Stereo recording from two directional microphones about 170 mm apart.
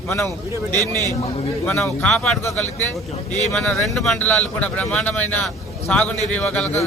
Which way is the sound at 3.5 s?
Centre (ahead or behind).